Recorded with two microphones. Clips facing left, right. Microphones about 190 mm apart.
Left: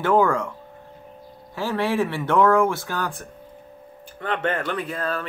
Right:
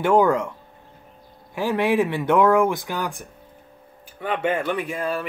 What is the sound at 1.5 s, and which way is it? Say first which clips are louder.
Speech: right 3 dB; 15° right (ahead or behind).